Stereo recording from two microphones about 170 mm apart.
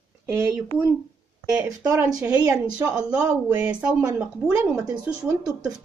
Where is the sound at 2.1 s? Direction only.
10° right (ahead or behind).